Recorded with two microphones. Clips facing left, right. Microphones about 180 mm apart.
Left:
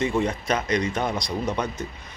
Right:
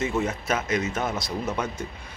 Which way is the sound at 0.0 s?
5° right (ahead or behind).